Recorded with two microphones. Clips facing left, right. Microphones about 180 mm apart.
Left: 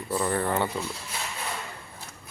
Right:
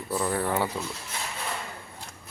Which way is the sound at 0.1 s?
Centre (ahead or behind).